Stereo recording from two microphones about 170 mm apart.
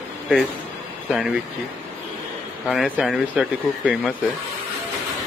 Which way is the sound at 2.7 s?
5° left (ahead or behind).